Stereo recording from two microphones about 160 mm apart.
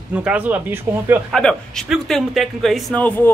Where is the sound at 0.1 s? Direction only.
5° right (ahead or behind).